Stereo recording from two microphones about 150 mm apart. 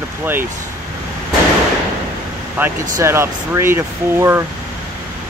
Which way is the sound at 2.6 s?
15° right (ahead or behind).